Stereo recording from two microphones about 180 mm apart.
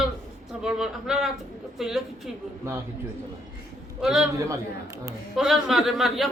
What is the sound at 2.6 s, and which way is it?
Speech, 15° right (ahead or behind).